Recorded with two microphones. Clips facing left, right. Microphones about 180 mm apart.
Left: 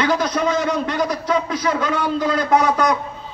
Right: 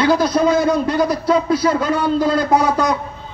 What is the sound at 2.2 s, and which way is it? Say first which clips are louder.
Speech: even; 30° right (ahead or behind).